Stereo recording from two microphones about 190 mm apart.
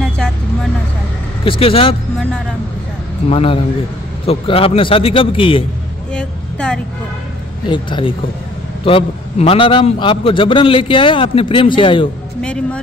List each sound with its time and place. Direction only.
1.4 s a man's voice: 30° left (ahead or behind)
3.3 s a man's voice: 30° left (ahead or behind)
6.1 s vehicle: 5° left (ahead or behind)
7.6 s a man's voice: 25° left (ahead or behind)